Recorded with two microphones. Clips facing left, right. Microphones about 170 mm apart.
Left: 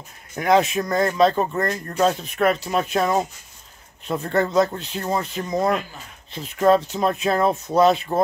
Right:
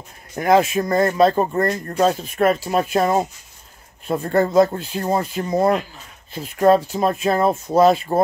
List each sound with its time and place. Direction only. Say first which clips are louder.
0.4 s speech: right 2 dB; 5° right (ahead or behind)
1.5 s speech: right 4 dB; 30° right (ahead or behind)
2.0 s speech: right 2 dB; 5° right (ahead or behind)
4.1 s speech: right 3 dB; 5° right (ahead or behind)